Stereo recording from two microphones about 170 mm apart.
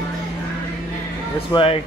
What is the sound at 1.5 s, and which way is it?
Speech, 35° left (ahead or behind).